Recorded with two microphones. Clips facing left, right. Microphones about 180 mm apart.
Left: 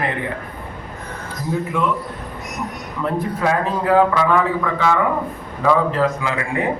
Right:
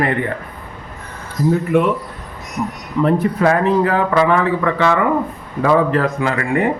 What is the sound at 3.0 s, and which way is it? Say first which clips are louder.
A man's voice: right 6 dB; 70° right (ahead or behind).